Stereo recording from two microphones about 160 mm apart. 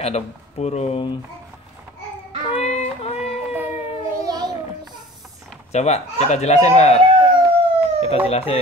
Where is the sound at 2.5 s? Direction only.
40° left (ahead or behind).